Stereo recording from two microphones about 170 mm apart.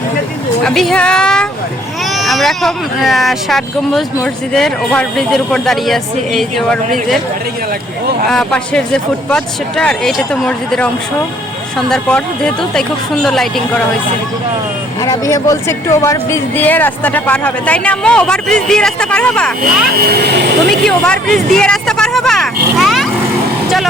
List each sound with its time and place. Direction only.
0.6 s speech: 5° left (ahead or behind)
8.3 s speech: 5° left (ahead or behind)
15.0 s speech: 20° left (ahead or behind)
19.9 s speech: 65° right (ahead or behind)
20.8 s speech: 5° left (ahead or behind)